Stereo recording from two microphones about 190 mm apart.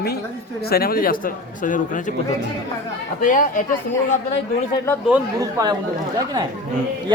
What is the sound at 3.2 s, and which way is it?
Speech, 45° left (ahead or behind).